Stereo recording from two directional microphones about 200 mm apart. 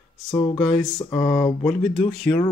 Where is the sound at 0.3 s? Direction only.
15° left (ahead or behind).